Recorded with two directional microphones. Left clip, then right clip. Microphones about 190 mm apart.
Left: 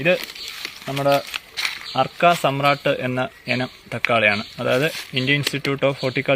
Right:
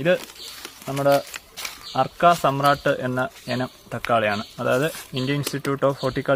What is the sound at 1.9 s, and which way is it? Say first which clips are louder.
Speech: even; 25° left (ahead or behind).